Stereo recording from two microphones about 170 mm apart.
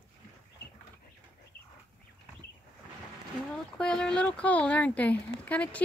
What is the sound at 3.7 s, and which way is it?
Speech, 5° left (ahead or behind).